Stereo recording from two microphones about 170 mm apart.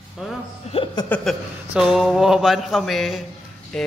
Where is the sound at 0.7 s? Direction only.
30° left (ahead or behind).